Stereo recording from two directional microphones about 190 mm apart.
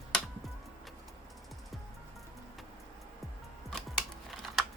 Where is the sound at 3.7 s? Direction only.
Centre (ahead or behind).